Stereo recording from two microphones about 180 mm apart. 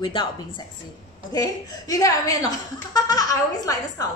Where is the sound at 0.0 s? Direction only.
30° left (ahead or behind).